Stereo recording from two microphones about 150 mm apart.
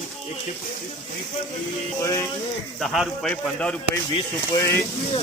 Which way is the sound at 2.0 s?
20° left (ahead or behind).